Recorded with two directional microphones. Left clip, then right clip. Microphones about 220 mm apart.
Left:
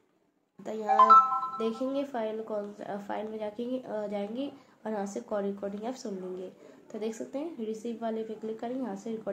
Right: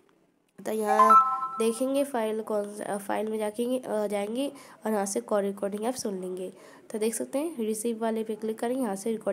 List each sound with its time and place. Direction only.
0.7 s a woman's voice: 35° right (ahead or behind)